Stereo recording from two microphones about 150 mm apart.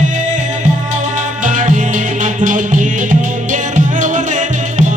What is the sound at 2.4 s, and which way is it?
Music, 55° right (ahead or behind).